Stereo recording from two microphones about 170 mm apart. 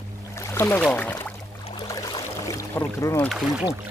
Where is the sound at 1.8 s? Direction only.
20° left (ahead or behind).